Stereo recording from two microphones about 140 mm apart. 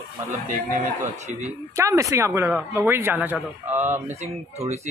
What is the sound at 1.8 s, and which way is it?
Speech, 20° right (ahead or behind).